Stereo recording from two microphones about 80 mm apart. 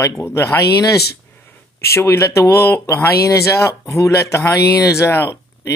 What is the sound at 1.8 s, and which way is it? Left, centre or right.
Speech, left.